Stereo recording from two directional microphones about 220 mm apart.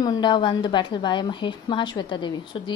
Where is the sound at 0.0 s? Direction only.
20° left (ahead or behind).